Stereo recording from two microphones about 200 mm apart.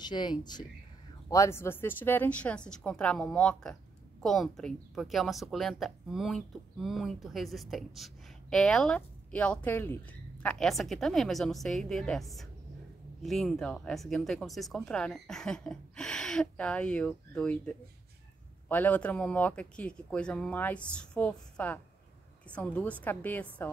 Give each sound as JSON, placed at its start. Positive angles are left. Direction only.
{"t": 0.0, "sound": "a woman's voice", "side_deg": 20}